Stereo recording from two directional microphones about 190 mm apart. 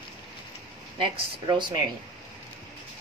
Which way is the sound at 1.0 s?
25° right (ahead or behind).